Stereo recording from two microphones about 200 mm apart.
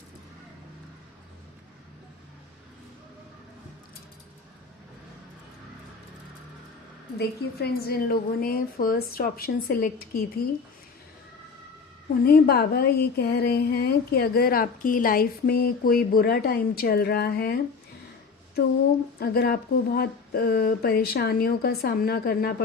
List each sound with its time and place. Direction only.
7.2 s a woman's voice: 50° left (ahead or behind)
12.2 s a woman's voice: 50° left (ahead or behind)
19.2 s a woman's voice: 50° left (ahead or behind)